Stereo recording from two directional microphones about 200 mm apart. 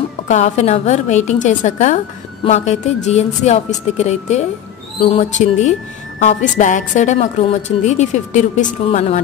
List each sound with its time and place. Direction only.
0.3 s a woman's voice: 35° left (ahead or behind)